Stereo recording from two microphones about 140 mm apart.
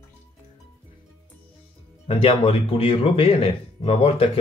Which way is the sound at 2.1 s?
40° left (ahead or behind).